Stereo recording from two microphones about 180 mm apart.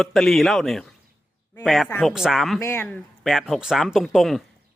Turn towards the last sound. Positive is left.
turn(degrees=0)  # may be behind; listen again after turning